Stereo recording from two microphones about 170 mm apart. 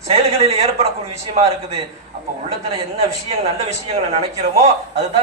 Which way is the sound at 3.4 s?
35° right (ahead or behind).